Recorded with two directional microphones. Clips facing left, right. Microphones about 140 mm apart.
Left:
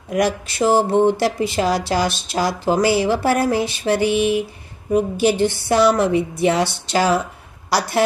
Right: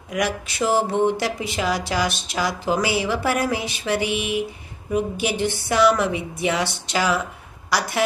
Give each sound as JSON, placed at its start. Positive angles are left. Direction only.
{"t": 0.1, "sound": "speech", "side_deg": 35}